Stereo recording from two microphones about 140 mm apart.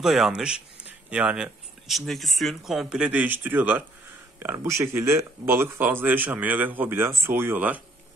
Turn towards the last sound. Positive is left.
turn(degrees=-10)  # may be behind; listen again after turning